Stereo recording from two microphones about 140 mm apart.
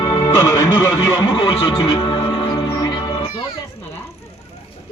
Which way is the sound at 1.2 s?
30° left (ahead or behind).